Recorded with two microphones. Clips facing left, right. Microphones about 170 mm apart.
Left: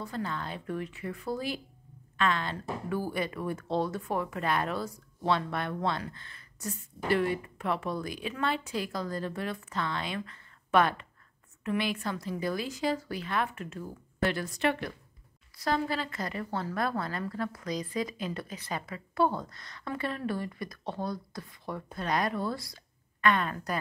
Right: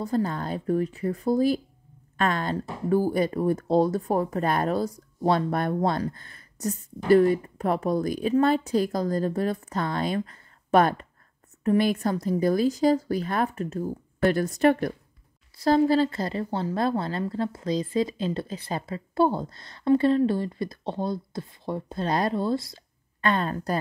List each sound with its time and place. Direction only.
0.0 s a woman's voice: 40° right (ahead or behind)
15.5 s a woman's voice: 30° right (ahead or behind)